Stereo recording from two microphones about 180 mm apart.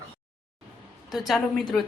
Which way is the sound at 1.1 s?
Centre (ahead or behind).